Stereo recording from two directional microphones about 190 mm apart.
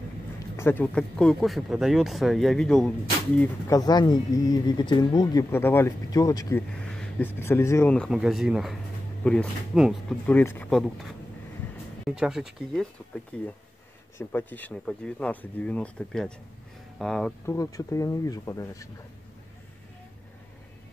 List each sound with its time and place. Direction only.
0.6 s speech: 10° left (ahead or behind)
3.3 s speech: 15° left (ahead or behind)
6.8 s speech: 5° left (ahead or behind)
10.2 s speech: 10° left (ahead or behind)
12.2 s speech: 5° right (ahead or behind)
17.5 s speech: 20° left (ahead or behind)